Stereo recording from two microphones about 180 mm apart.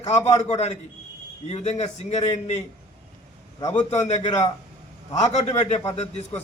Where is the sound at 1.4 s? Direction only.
35° left (ahead or behind).